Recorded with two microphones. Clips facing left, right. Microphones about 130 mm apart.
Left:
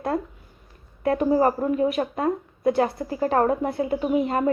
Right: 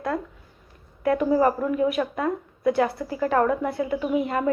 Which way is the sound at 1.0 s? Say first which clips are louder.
Even; 30° left (ahead or behind).